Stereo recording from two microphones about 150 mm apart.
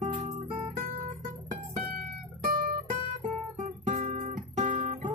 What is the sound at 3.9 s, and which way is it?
Guitar, 60° right (ahead or behind).